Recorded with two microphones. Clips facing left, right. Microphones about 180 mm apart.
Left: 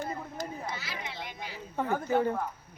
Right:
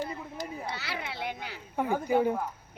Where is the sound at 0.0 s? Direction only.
50° left (ahead or behind).